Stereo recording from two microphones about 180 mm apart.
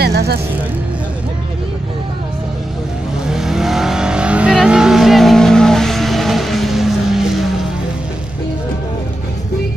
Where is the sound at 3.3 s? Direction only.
Centre (ahead or behind).